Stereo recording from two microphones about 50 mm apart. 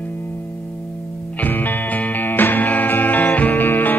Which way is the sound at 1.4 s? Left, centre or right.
Left.